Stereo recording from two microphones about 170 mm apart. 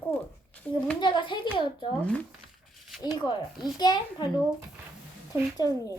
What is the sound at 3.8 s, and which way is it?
Speech, 25° left (ahead or behind).